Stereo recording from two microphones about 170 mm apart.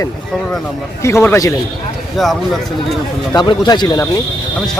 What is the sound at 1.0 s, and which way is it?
Speech, 15° left (ahead or behind).